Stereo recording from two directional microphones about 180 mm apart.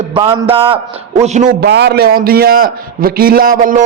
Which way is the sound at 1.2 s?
40° right (ahead or behind).